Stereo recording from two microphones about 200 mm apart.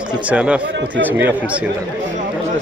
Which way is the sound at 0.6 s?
60° right (ahead or behind).